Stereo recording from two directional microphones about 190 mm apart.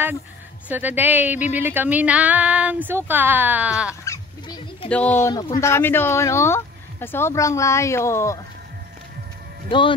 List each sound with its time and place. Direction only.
0.7 s speech: 10° right (ahead or behind)
4.0 s goose: 15° left (ahead or behind)
4.8 s speech: 5° left (ahead or behind)
9.7 s a man's voice: 25° left (ahead or behind)